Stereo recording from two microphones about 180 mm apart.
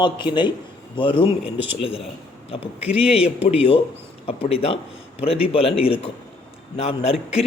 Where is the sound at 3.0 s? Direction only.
35° left (ahead or behind).